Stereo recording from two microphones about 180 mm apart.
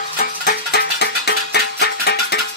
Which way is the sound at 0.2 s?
60° left (ahead or behind).